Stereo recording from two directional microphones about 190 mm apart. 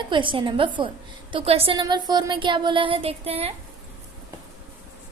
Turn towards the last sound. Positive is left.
turn(degrees=-30)  # may be behind; listen again after turning